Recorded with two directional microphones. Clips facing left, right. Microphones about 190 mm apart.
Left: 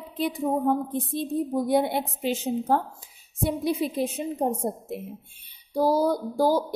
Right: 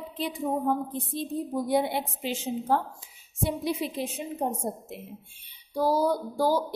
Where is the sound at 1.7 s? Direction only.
50° left (ahead or behind).